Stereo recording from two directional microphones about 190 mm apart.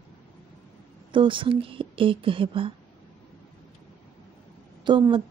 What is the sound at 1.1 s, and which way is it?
Speech, 25° right (ahead or behind).